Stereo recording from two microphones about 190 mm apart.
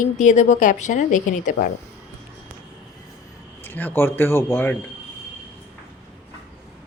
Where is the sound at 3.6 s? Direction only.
10° left (ahead or behind).